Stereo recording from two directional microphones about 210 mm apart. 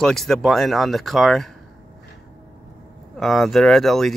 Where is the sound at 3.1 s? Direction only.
Centre (ahead or behind).